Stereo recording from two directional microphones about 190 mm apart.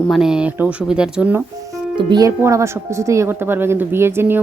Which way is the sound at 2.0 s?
20° right (ahead or behind).